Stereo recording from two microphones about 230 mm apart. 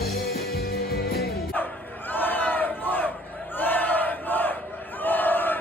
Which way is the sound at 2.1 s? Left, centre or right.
Centre.